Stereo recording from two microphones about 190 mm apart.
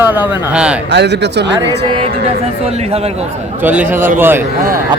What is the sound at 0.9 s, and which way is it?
Speech, 65° right (ahead or behind).